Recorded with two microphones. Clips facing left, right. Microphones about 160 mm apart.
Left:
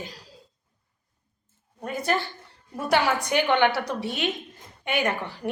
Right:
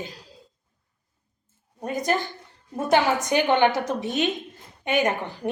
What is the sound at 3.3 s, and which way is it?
A woman's voice, 20° right (ahead or behind).